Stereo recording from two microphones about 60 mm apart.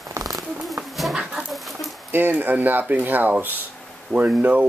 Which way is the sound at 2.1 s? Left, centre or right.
Right.